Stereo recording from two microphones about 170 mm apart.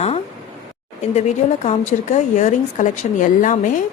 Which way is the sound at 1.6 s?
40° left (ahead or behind).